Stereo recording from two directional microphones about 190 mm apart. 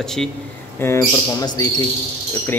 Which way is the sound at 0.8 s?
15° left (ahead or behind).